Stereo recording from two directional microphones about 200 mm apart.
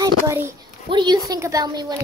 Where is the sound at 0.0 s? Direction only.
15° right (ahead or behind).